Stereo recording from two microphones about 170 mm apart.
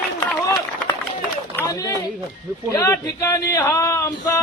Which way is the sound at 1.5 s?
20° left (ahead or behind).